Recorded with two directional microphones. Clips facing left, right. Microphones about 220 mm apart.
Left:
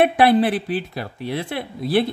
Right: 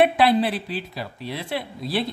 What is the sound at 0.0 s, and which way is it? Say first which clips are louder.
A woman's voice: left 3 dB; 55° left (ahead or behind).